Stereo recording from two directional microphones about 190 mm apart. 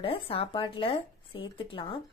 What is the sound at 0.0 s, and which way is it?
Speech, 30° left (ahead or behind).